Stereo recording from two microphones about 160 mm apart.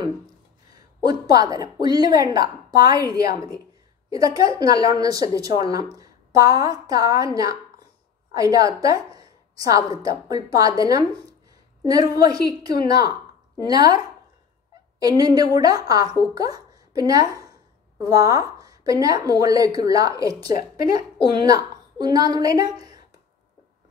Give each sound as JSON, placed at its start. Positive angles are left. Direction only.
{"t": 0.7, "sound": "a woman's voice", "side_deg": -25}